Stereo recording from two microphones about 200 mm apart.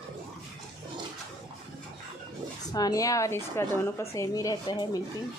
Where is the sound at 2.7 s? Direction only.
20° left (ahead or behind).